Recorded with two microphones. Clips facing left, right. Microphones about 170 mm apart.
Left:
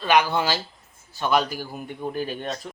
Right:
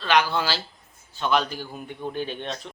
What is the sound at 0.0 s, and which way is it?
A man's voice, 15° left (ahead or behind).